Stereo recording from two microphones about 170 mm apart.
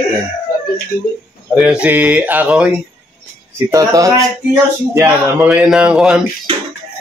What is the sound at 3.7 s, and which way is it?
Speech, 20° right (ahead or behind).